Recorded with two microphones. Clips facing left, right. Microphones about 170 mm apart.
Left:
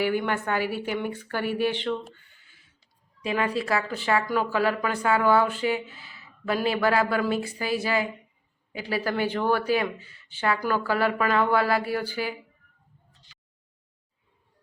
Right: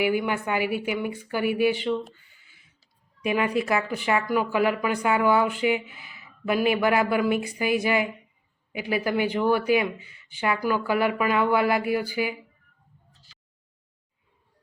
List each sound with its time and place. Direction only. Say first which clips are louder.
0.0 s speech: right 1 dB; 10° right (ahead or behind)
3.2 s speech: right 2 dB; 15° right (ahead or behind)